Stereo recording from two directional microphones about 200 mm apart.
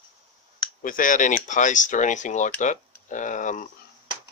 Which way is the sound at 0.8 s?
40° left (ahead or behind).